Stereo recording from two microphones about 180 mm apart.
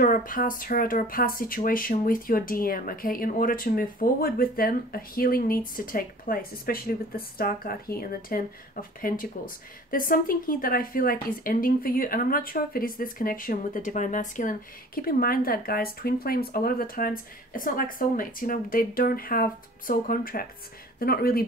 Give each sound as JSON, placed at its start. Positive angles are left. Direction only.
{"t": 0.0, "sound": "a woman's voice", "side_deg": 50}